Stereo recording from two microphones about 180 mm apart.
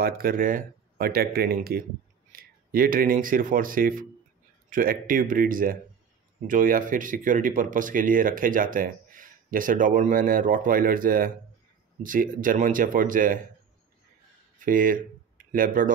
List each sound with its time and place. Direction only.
0.0 s speech: 55° right (ahead or behind)
14.6 s speech: 50° right (ahead or behind)